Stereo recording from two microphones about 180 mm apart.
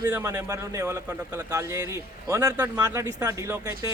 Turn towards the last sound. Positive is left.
turn(degrees=-15)  # may be behind; listen again after turning